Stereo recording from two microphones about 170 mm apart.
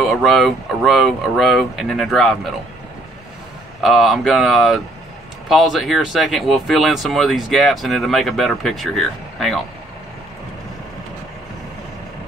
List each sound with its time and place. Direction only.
0.0 s speech: centre (ahead or behind)
3.8 s speech: centre (ahead or behind)